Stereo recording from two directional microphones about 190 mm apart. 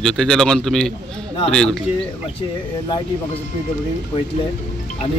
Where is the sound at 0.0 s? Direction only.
Centre (ahead or behind).